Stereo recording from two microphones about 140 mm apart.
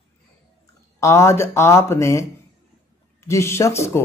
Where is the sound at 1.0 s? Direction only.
20° left (ahead or behind).